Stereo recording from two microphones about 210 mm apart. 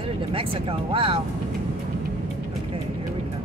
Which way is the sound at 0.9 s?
25° right (ahead or behind).